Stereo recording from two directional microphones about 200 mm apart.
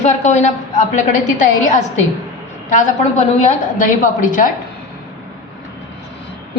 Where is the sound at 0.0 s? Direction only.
35° left (ahead or behind).